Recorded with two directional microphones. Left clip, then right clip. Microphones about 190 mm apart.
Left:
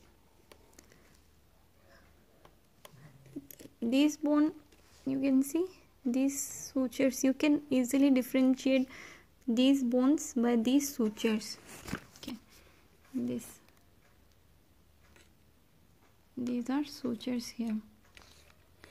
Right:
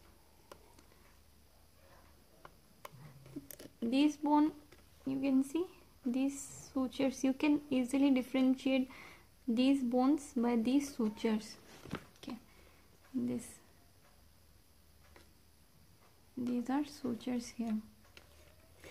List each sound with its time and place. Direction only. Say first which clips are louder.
3.9 s speech: left 2 dB; 15° left (ahead or behind)
12.2 s a sound: left 2 dB; 15° left (ahead or behind)
16.4 s speech: left 2 dB; 15° left (ahead or behind)